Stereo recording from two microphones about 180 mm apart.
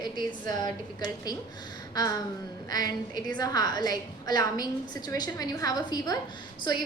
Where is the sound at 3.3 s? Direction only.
20° left (ahead or behind).